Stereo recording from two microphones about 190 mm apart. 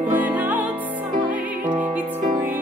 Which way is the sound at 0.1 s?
10° right (ahead or behind).